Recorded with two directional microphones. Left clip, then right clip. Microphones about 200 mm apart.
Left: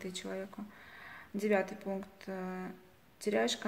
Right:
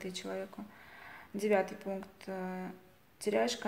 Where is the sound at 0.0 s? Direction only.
5° right (ahead or behind).